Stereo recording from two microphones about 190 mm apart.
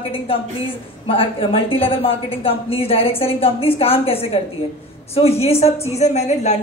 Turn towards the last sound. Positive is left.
turn(degrees=35)  # may be behind; listen again after turning